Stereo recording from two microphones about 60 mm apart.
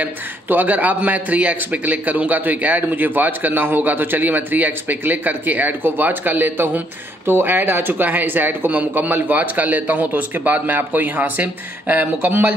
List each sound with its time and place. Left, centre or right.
0.0 s a man's voice: right